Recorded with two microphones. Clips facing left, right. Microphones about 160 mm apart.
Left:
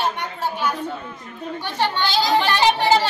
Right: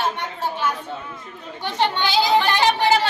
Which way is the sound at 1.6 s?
20° right (ahead or behind).